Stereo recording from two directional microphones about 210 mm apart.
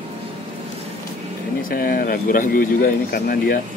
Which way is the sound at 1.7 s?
45° left (ahead or behind).